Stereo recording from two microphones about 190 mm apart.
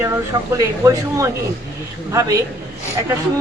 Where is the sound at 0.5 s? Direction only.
15° right (ahead or behind).